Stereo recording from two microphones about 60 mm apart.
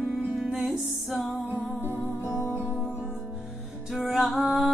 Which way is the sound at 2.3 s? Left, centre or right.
Right.